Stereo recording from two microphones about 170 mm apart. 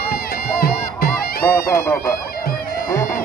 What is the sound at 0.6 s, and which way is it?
Music, 60° left (ahead or behind).